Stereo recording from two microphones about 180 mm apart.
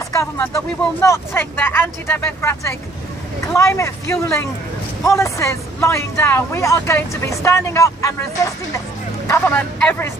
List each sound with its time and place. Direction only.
0.1 s speech: 15° left (ahead or behind)